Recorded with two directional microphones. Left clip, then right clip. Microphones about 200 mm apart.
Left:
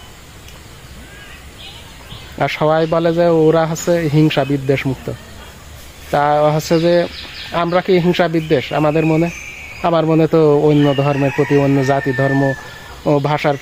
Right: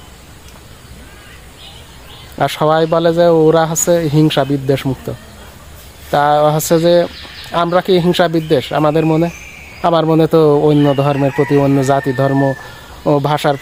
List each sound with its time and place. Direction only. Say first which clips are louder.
2.4 s speech: right 2 dB; 15° right (ahead or behind)